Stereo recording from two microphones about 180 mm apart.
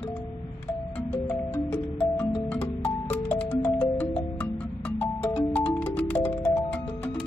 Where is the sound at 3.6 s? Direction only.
10° left (ahead or behind).